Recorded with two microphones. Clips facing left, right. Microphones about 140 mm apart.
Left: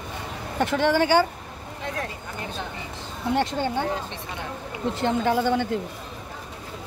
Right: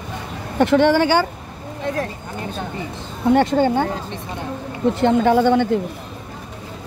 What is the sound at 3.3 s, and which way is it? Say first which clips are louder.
Speech: right 9 dB; 55° right (ahead or behind).